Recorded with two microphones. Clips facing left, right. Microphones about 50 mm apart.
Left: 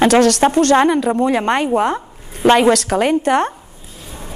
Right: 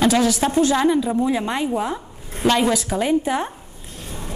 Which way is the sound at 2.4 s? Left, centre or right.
Left.